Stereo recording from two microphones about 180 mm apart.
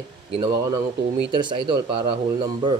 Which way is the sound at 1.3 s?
25° right (ahead or behind).